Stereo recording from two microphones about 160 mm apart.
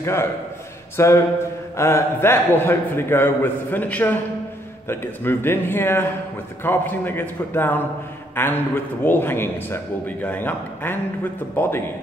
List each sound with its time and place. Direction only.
0.0 s a man's voice: 15° left (ahead or behind)